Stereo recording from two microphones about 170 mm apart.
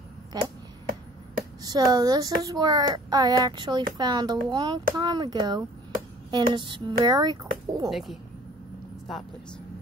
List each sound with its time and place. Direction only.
0.3 s speech: 25° right (ahead or behind)
1.6 s speech: 20° right (ahead or behind)
7.9 s speech: centre (ahead or behind)